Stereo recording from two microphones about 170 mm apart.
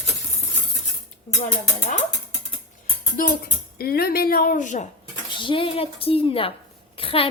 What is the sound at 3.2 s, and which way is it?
A woman's voice, 55° left (ahead or behind).